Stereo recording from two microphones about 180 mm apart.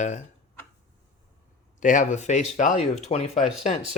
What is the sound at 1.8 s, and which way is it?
Speech, 45° left (ahead or behind).